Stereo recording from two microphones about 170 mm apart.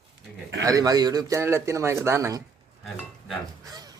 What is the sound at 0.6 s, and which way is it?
Speech, 20° right (ahead or behind).